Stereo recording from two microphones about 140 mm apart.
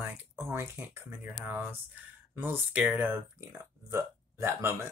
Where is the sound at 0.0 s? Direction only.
15° right (ahead or behind).